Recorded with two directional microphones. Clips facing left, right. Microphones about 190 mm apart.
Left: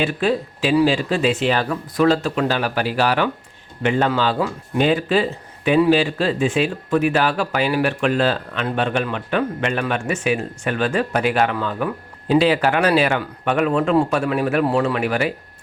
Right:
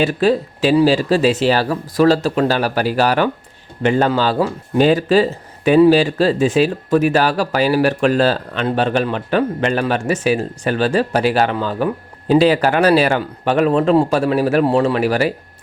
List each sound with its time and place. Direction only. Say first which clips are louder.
0.0 s speech: right 5 dB; 35° right (ahead or behind)